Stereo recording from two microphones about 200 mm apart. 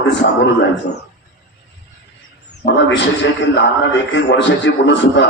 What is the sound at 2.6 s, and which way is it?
A man's voice, 60° left (ahead or behind).